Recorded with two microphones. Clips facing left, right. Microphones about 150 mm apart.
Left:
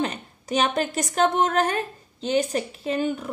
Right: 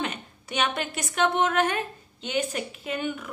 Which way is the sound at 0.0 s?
35° left (ahead or behind).